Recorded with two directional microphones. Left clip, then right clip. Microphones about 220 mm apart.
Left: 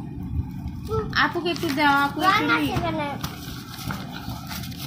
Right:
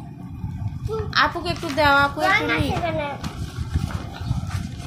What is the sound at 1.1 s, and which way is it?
A child's voice, 20° right (ahead or behind).